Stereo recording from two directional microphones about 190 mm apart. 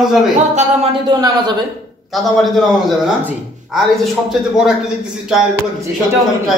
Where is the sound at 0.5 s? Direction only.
30° right (ahead or behind).